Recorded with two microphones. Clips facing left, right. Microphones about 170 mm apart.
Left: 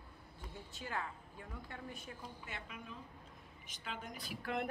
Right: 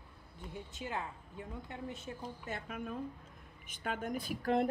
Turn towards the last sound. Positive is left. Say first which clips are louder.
# right 8 dB
turn(degrees=-40)  # may be behind; listen again after turning